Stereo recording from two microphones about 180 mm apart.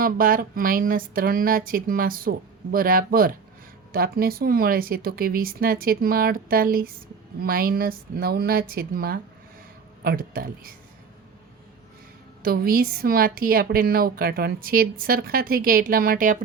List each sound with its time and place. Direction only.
0.0 s a woman's voice: 50° right (ahead or behind)
12.4 s a woman's voice: 55° right (ahead or behind)